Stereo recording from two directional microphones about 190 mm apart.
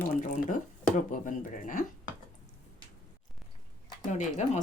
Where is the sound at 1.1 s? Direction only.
45° left (ahead or behind).